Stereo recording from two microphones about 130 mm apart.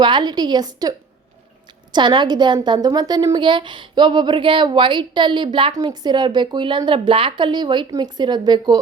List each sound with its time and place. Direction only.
0.0 s a woman's voice: 35° right (ahead or behind)